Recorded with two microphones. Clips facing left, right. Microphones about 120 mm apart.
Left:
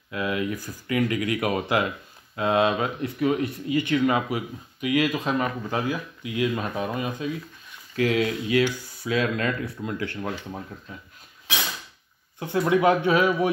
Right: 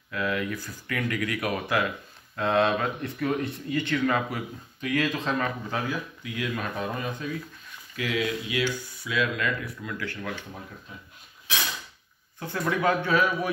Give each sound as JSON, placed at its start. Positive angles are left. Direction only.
{"t": 0.1, "sound": "speech", "side_deg": 20}
{"t": 2.3, "sound": "speech", "side_deg": 10}
{"t": 7.9, "sound": "speech", "side_deg": 35}
{"t": 12.4, "sound": "speech", "side_deg": 20}